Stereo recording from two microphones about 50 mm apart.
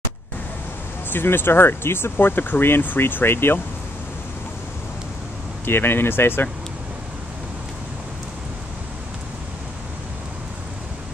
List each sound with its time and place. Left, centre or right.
1.1 s speech: left
5.7 s speech: left